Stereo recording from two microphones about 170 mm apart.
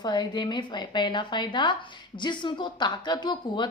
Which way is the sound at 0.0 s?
25° left (ahead or behind).